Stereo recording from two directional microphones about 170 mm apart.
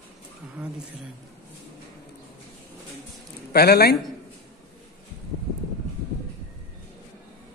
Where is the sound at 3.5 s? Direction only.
70° left (ahead or behind).